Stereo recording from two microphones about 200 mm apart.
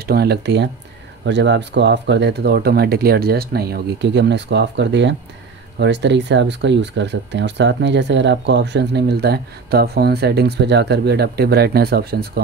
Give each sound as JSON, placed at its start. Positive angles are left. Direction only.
{"t": 0.0, "sound": "speech", "side_deg": -50}